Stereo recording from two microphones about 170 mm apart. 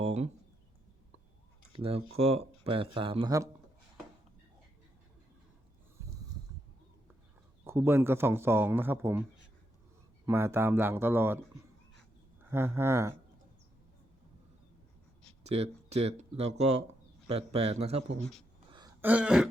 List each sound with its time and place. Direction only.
0.0 s speech: 40° right (ahead or behind)
1.7 s speech: 35° right (ahead or behind)
7.6 s a man's voice: 15° right (ahead or behind)
10.2 s a man's voice: 15° right (ahead or behind)
12.5 s a man's voice: 15° right (ahead or behind)
15.4 s speech: 40° right (ahead or behind)
19.0 s a man's voice: 5° right (ahead or behind)